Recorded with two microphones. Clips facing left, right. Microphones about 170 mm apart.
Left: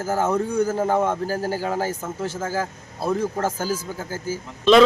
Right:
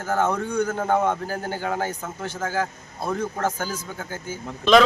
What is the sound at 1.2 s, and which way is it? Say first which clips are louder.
Speech: left 4 dB; 30° left (ahead or behind).